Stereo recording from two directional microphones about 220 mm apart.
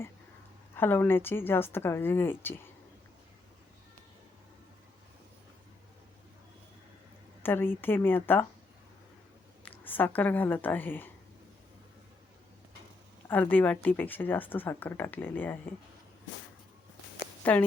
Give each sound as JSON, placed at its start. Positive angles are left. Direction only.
{"t": 0.8, "sound": "speech", "side_deg": 10}
{"t": 7.4, "sound": "speech", "side_deg": 10}
{"t": 9.6, "sound": "speech", "side_deg": 10}
{"t": 13.2, "sound": "speech", "side_deg": 10}
{"t": 17.4, "sound": "speech", "side_deg": 5}